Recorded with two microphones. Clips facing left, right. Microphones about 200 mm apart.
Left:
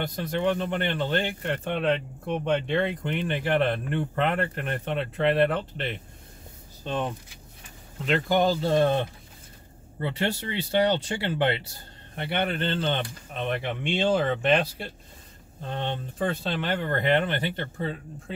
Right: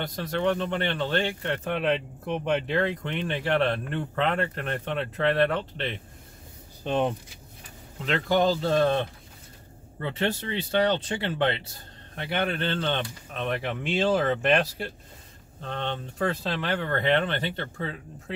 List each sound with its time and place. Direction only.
0.0 s speech: 5° left (ahead or behind)
6.8 s speech: 20° right (ahead or behind)
8.0 s speech: 5° left (ahead or behind)
8.6 s speech: 15° left (ahead or behind); by 14.9 s centre (ahead or behind)
15.6 s speech: 15° left (ahead or behind)
16.2 s speech: centre (ahead or behind)